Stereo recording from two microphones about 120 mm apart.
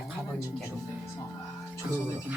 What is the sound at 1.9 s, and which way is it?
Speech, 20° left (ahead or behind).